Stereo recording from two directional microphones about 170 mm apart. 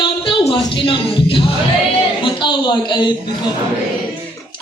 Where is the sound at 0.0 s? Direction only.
30° left (ahead or behind).